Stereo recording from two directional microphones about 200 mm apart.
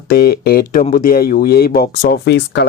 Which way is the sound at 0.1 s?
50° left (ahead or behind).